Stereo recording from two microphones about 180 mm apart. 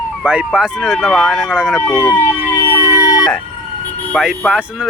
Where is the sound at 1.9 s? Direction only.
15° left (ahead or behind).